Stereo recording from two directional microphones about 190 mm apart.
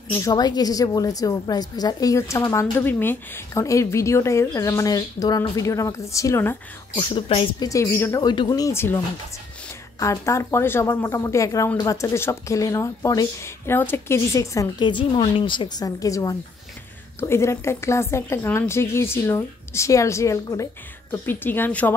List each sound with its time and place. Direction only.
0.1 s speech: 15° left (ahead or behind)
7.0 s speech: 25° left (ahead or behind)
7.6 s speech: 15° left (ahead or behind)